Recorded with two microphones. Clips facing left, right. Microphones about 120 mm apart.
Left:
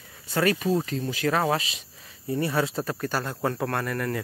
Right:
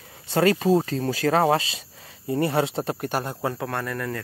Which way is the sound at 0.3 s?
30° right (ahead or behind).